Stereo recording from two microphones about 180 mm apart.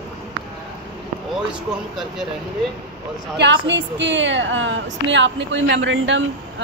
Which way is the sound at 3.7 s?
85° right.